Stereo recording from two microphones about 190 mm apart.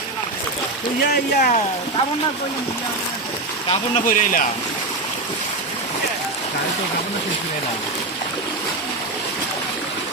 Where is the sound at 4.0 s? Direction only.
45° left (ahead or behind).